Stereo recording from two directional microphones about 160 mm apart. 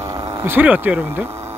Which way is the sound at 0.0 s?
20° right (ahead or behind).